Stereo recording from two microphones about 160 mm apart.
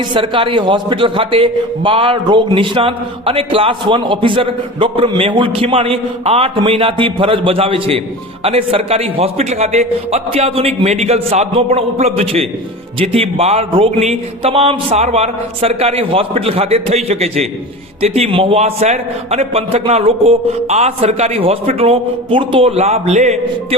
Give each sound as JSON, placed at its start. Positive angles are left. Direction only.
{"t": 0.0, "sound": "a man's voice", "side_deg": -30}